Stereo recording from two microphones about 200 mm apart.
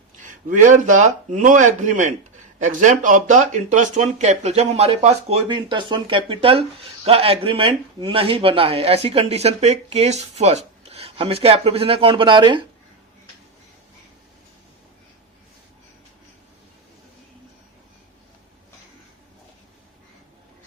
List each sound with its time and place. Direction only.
0.2 s speech: 40° right (ahead or behind); by 12.6 s 25° right (ahead or behind)